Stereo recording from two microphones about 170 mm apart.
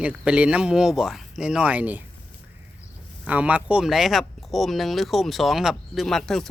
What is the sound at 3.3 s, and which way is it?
Speech, 10° right (ahead or behind).